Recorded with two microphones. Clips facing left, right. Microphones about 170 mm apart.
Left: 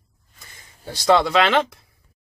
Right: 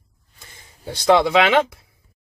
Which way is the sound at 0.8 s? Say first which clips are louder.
Right 2 dB; 15° right (ahead or behind).